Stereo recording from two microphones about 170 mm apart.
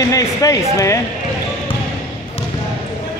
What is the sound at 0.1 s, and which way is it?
Speech, 20° left (ahead or behind).